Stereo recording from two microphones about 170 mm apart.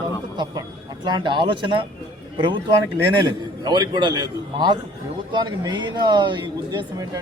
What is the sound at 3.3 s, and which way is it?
Speech, 25° right (ahead or behind).